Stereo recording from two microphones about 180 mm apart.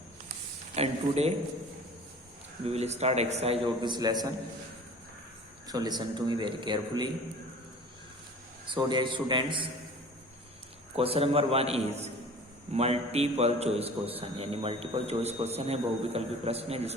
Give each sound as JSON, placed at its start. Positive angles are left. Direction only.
{"t": 0.8, "sound": "a man's voice", "side_deg": -35}
{"t": 2.6, "sound": "a man's voice", "side_deg": -35}
{"t": 5.6, "sound": "a man's voice", "side_deg": -20}
{"t": 8.6, "sound": "a man's voice", "side_deg": -25}
{"t": 10.9, "sound": "a man's voice", "side_deg": -30}